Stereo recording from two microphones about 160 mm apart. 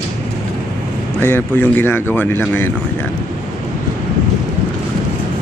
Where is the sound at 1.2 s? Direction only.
15° left (ahead or behind).